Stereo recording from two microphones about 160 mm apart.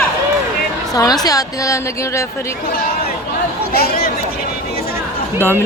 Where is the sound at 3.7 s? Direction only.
70° left (ahead or behind).